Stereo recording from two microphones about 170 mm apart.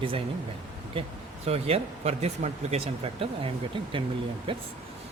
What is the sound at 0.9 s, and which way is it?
Speech, 30° right (ahead or behind).